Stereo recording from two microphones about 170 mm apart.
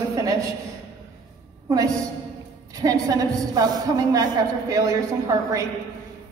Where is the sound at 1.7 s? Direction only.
20° right (ahead or behind).